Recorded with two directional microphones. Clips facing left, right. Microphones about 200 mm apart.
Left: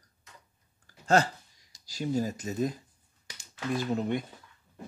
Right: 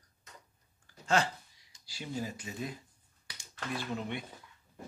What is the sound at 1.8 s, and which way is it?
Speech, 40° left (ahead or behind).